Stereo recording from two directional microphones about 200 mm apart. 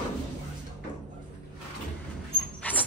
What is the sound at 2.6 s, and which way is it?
Dog, 5° left (ahead or behind).